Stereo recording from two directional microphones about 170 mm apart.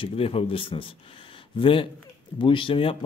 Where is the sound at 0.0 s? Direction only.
30° left (ahead or behind).